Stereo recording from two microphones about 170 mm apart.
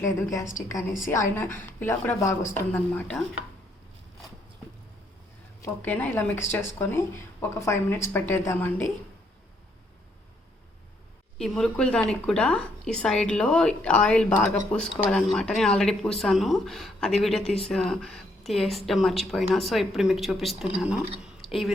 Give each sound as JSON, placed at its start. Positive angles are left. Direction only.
{"t": 0.0, "sound": "speech", "side_deg": 15}
{"t": 5.6, "sound": "speech", "side_deg": 10}
{"t": 11.3, "sound": "speech", "side_deg": 0}
{"t": 21.4, "sound": "a sound", "side_deg": 0}